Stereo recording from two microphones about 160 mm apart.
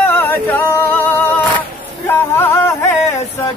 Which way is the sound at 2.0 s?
15° left (ahead or behind).